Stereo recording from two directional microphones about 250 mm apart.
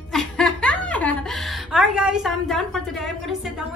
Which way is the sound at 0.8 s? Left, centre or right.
Centre.